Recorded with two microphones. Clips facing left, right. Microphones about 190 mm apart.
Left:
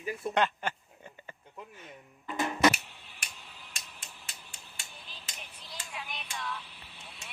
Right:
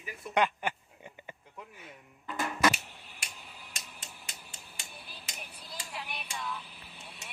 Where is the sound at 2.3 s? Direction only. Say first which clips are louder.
Left 3 dB; 20° left (ahead or behind).